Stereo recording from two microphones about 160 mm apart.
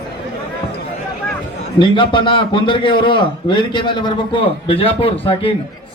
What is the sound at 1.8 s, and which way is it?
A man's voice, 30° left (ahead or behind).